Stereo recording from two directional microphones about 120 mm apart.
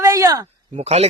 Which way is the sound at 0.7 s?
60° right (ahead or behind).